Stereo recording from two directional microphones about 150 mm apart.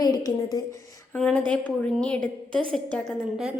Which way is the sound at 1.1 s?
5° left (ahead or behind).